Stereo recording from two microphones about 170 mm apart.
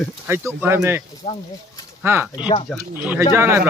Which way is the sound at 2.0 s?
10° right (ahead or behind).